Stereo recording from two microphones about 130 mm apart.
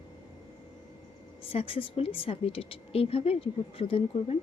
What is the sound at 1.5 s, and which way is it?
Speech, 45° left (ahead or behind).